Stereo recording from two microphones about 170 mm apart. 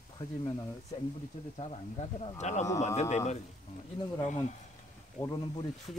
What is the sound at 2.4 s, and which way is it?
Speech, 40° left (ahead or behind).